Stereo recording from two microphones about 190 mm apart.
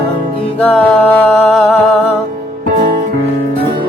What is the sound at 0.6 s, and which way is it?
Music, 10° left (ahead or behind).